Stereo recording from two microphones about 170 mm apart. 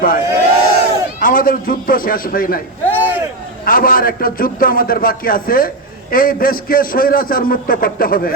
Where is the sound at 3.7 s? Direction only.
55° left (ahead or behind).